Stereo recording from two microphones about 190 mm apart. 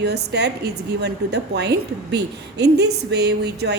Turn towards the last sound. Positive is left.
turn(degrees=-60)  # may be behind; listen again after turning